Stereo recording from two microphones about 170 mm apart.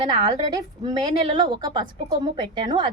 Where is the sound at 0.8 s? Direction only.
30° right (ahead or behind).